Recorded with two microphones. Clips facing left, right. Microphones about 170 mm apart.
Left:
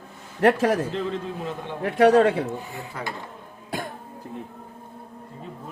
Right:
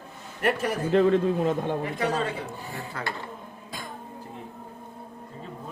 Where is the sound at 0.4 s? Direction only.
90° left.